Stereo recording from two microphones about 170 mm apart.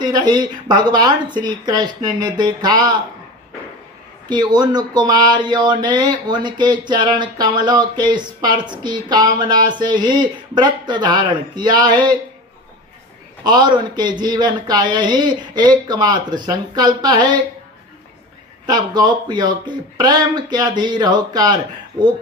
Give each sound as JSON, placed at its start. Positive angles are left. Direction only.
{"t": 0.0, "sound": "speech", "side_deg": -25}
{"t": 4.3, "sound": "speech", "side_deg": -25}
{"t": 13.4, "sound": "speech", "side_deg": -25}
{"t": 18.6, "sound": "speech", "side_deg": -25}